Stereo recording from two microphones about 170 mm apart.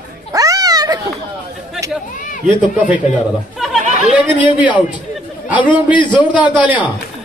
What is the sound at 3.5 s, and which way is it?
Speech, centre (ahead or behind).